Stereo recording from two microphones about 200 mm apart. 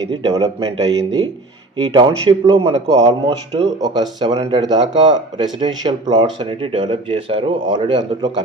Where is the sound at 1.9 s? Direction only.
20° right (ahead or behind).